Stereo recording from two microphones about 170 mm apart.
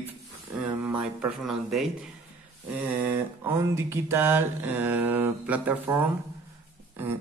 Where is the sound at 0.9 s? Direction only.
5° right (ahead or behind).